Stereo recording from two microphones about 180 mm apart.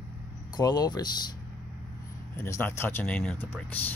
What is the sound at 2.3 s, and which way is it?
Speech, 15° left (ahead or behind).